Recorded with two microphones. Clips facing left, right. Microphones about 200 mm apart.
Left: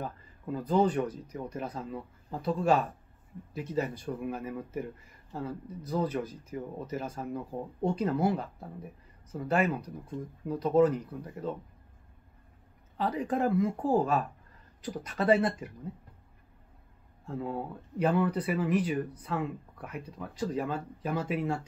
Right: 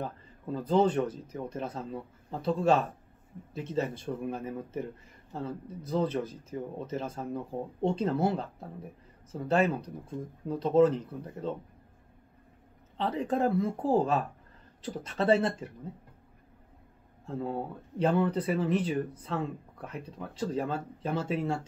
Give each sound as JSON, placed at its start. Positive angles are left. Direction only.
{"t": 0.0, "sound": "speech", "side_deg": -25}
{"t": 12.9, "sound": "speech", "side_deg": -25}
{"t": 17.3, "sound": "speech", "side_deg": -25}